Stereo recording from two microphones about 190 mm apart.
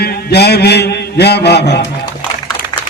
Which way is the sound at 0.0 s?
60° left (ahead or behind).